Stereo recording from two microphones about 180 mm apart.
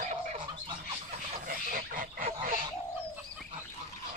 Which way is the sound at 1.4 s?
50° right (ahead or behind).